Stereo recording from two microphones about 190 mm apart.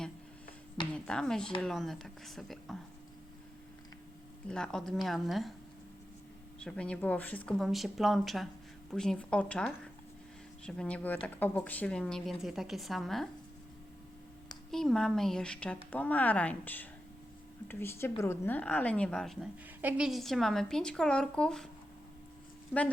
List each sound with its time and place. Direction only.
0.9 s speech: 5° left (ahead or behind)
4.4 s speech: 5° left (ahead or behind)
6.7 s speech: 5° left (ahead or behind)
14.7 s a woman's voice: centre (ahead or behind)
22.7 s speech: 5° right (ahead or behind)